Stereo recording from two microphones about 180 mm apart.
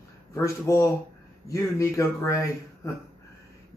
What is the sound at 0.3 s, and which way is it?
A man's voice, 15° left (ahead or behind).